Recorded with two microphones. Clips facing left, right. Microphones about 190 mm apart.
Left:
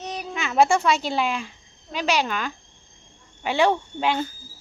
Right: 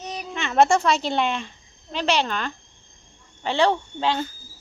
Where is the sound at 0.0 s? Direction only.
Centre (ahead or behind).